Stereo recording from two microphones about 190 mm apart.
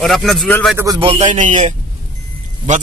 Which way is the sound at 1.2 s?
40° right (ahead or behind).